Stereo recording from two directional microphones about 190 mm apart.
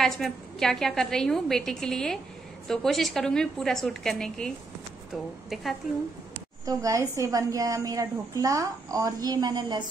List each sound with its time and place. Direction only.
0.0 s a woman's voice: centre (ahead or behind)
6.6 s a woman's voice: 15° right (ahead or behind)